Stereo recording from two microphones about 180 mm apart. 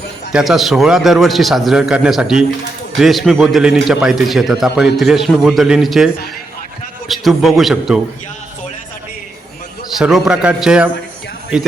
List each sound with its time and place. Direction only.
0.3 s a man's voice: centre (ahead or behind)
7.1 s a man's voice: centre (ahead or behind)
10.0 s a man's voice: 5° right (ahead or behind)